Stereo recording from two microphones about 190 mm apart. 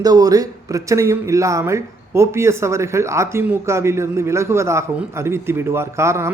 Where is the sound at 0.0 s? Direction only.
20° right (ahead or behind).